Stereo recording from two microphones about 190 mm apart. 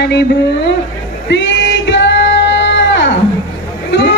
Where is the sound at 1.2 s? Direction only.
70° left (ahead or behind).